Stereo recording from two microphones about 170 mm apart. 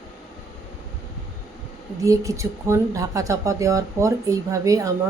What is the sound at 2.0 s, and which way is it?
Speech, 20° right (ahead or behind).